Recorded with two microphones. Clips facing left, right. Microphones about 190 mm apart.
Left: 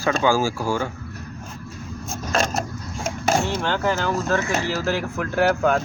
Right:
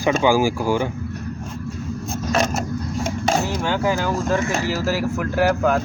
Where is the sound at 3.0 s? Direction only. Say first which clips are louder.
Even; centre (ahead or behind).